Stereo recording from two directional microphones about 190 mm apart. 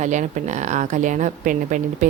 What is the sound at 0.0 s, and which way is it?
A woman's voice, 40° right (ahead or behind).